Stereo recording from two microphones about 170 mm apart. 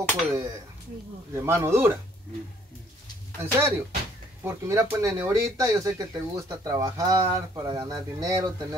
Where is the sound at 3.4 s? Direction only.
15° right (ahead or behind).